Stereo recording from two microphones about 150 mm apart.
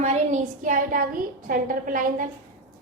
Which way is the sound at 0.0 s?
50° right (ahead or behind).